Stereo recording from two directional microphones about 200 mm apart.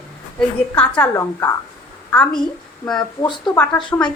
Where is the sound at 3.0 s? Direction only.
25° left (ahead or behind).